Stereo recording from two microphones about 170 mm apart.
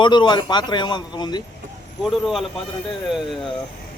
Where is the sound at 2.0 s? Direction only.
Centre (ahead or behind).